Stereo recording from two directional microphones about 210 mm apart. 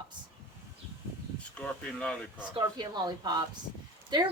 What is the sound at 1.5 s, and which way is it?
Speech, 5° left (ahead or behind).